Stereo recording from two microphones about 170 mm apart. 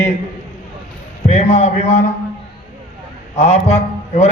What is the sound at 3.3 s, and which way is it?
Speech, 40° left (ahead or behind).